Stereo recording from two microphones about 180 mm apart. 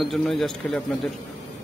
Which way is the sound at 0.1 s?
Centre (ahead or behind).